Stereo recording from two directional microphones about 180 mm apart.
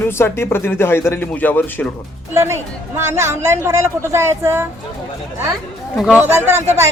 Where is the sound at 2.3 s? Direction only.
15° right (ahead or behind).